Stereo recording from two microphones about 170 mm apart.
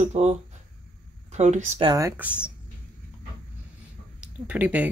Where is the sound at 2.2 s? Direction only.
10° right (ahead or behind).